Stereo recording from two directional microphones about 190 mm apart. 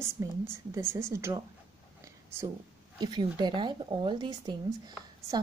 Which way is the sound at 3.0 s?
25° right (ahead or behind).